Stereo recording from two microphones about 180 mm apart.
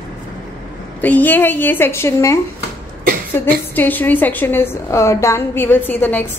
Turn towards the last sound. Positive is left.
turn(degrees=10)  # may be behind; listen again after turning